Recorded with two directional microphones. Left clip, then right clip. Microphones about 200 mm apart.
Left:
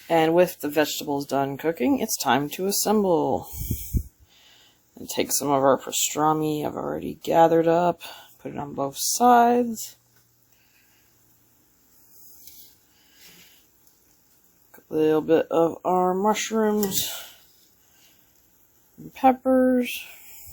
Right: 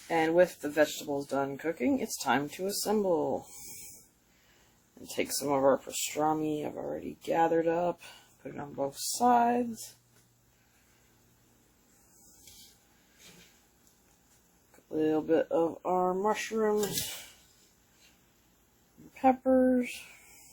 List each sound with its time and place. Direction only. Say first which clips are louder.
0.1 s speech: left 6 dB; 45° left (ahead or behind)
5.0 s speech: left 7 dB; 50° left (ahead or behind)
14.8 s speech: left 8 dB; 50° left (ahead or behind); by 16.8 s 70° left (ahead or behind)
19.1 s speech: left 6 dB; 50° left (ahead or behind)